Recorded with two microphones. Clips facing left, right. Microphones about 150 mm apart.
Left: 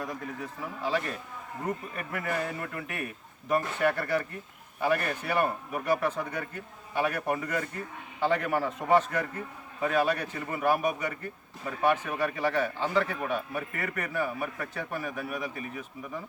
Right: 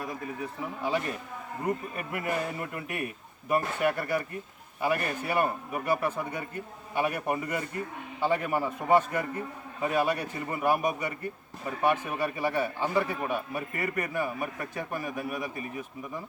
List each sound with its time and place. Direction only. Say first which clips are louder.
0.8 s a man's voice: even; 15° right (ahead or behind)